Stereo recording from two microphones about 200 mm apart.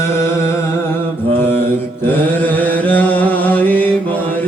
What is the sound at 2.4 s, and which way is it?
Music, 10° left (ahead or behind).